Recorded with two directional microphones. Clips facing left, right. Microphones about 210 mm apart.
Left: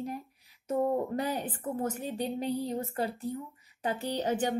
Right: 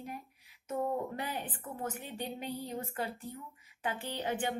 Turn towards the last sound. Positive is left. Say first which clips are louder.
# left 6 dB
turn(degrees=40)  # may be behind; listen again after turning